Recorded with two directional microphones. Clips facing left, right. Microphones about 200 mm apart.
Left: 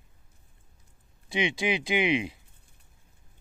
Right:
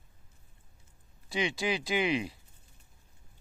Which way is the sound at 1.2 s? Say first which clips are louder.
Left 3 dB; 20° left (ahead or behind).